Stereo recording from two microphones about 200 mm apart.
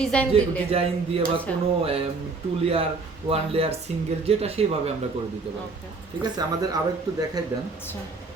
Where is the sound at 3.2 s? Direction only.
30° right (ahead or behind).